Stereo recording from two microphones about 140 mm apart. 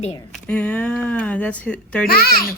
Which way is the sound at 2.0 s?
90° left.